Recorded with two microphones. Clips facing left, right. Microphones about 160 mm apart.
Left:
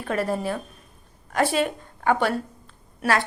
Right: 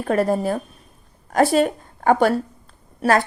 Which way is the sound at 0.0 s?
40° right (ahead or behind).